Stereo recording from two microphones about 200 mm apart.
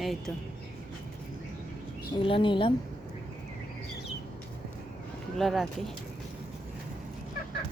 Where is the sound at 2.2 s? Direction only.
25° left (ahead or behind).